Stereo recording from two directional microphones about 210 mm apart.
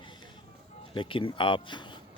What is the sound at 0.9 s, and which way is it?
Speech, 25° left (ahead or behind).